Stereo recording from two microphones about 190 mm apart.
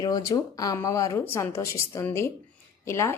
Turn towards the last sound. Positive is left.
turn(degrees=15)  # may be behind; listen again after turning